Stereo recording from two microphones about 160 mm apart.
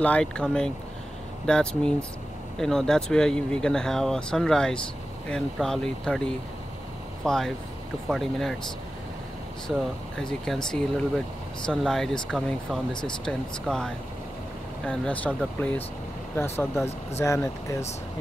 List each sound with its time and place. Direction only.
0.0 s speech: 5° left (ahead or behind)
10.1 s speech: 5° left (ahead or behind)